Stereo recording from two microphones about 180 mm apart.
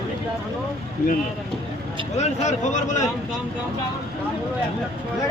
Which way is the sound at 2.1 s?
40° left (ahead or behind).